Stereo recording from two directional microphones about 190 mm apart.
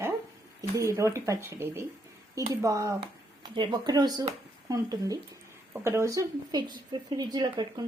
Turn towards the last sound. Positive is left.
turn(degrees=-20)  # may be behind; listen again after turning